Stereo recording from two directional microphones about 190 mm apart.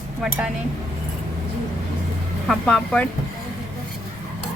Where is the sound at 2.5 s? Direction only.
5° left (ahead or behind).